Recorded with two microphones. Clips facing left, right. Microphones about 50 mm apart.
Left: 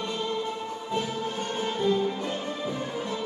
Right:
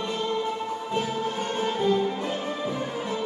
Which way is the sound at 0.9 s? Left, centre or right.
Centre.